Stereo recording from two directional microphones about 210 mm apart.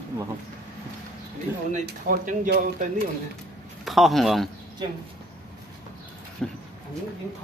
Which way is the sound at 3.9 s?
Centre (ahead or behind).